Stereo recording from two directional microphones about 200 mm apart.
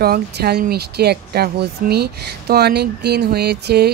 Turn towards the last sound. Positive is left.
turn(degrees=-55)  # may be behind; listen again after turning